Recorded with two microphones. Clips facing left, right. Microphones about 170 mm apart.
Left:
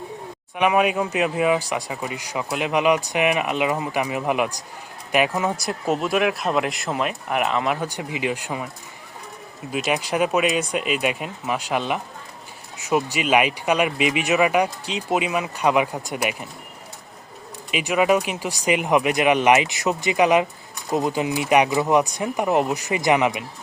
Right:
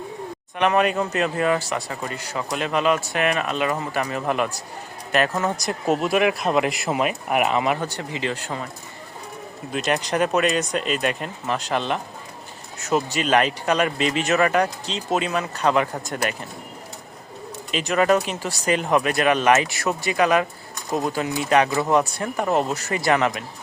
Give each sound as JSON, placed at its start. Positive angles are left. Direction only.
{"t": 0.5, "sound": "speech", "side_deg": 10}
{"t": 7.8, "sound": "speech", "side_deg": 10}
{"t": 9.7, "sound": "speech", "side_deg": 5}
{"t": 17.7, "sound": "speech", "side_deg": 10}